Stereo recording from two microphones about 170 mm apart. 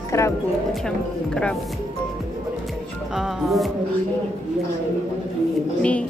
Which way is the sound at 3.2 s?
Centre (ahead or behind).